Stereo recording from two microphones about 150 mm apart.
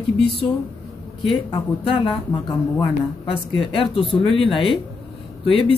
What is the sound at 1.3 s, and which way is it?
Speech, 35° left (ahead or behind).